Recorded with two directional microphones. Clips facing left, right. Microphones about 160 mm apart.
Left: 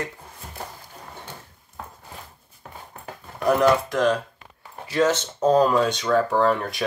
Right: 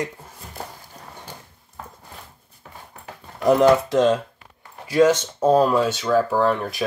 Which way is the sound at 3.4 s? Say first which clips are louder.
Right 3 dB; 25° right (ahead or behind).